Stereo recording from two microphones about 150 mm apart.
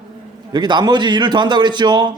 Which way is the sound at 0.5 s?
30° right (ahead or behind).